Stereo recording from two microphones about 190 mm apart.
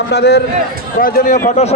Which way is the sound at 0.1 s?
60° left (ahead or behind).